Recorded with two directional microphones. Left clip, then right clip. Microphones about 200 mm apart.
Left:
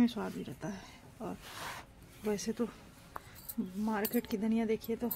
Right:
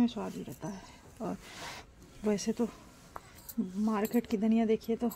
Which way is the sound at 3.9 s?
25° right (ahead or behind).